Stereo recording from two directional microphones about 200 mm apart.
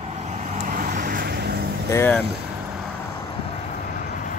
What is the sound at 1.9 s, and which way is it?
Speech, 10° left (ahead or behind).